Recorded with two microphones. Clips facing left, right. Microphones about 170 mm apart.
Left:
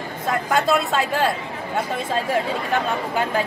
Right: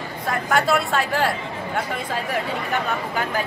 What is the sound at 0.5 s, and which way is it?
Speech, 20° left (ahead or behind).